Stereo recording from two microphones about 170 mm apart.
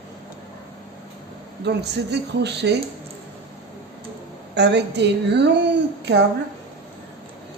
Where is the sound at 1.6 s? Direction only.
80° right.